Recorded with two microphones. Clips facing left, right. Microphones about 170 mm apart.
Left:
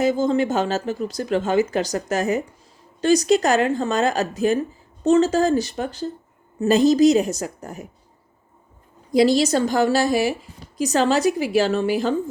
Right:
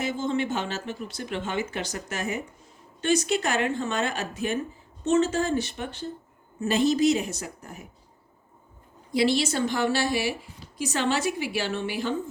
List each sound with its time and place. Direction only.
0.0 s speech: 40° left (ahead or behind)
9.1 s a woman's voice: 40° left (ahead or behind)